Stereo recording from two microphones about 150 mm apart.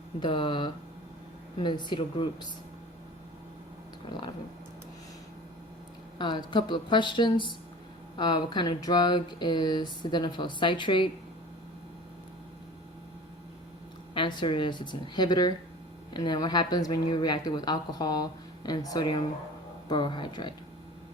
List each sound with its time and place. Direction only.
0.2 s speech: 35° left (ahead or behind)
6.1 s speech: 30° left (ahead or behind)
14.1 s speech: 30° left (ahead or behind)